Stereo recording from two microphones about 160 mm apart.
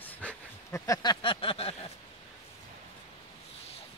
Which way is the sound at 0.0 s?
10° left (ahead or behind).